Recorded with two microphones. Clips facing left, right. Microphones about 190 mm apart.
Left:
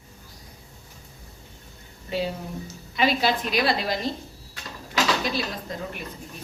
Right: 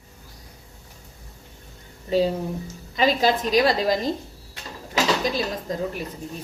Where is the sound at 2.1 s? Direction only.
40° right (ahead or behind).